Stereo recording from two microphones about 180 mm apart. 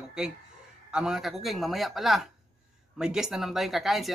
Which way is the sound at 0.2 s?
5° right (ahead or behind).